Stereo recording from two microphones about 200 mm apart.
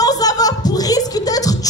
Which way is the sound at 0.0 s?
20° left (ahead or behind).